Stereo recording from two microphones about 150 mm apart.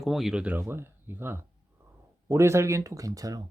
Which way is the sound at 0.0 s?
Centre (ahead or behind).